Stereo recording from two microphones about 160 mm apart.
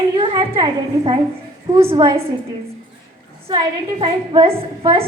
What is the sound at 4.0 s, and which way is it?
A woman's voice, 30° right (ahead or behind).